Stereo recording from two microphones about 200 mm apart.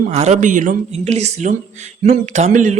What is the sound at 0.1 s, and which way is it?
A man's voice, 35° right (ahead or behind).